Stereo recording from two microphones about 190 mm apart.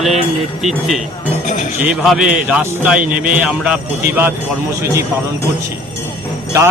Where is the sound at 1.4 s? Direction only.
40° left (ahead or behind).